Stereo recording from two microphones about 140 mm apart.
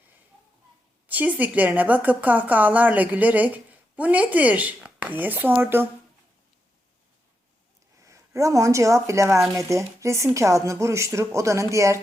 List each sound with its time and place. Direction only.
1.0 s a woman's voice: 10° right (ahead or behind)
8.0 s speech: 20° right (ahead or behind)